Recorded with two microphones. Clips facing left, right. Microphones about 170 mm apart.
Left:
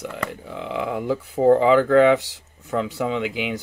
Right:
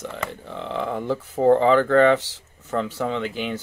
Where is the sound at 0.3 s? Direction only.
10° left (ahead or behind).